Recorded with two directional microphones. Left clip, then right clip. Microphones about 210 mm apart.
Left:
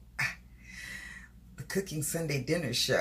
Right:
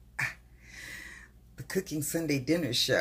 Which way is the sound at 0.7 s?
35° right (ahead or behind).